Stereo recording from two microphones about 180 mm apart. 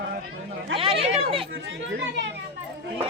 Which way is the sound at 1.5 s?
90° right.